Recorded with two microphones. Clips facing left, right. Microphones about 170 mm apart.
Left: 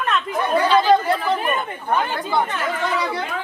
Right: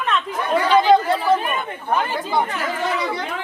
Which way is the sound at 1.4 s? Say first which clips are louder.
Left 2 dB; 5° left (ahead or behind).